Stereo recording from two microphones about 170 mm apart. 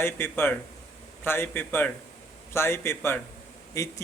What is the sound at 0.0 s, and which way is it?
Speech, 15° left (ahead or behind).